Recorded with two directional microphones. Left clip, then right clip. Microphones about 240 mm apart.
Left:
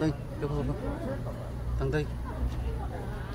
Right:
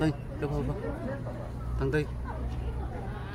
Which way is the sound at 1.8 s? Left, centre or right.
Centre.